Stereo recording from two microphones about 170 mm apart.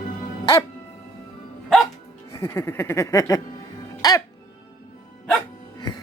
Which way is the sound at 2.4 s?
15° left (ahead or behind).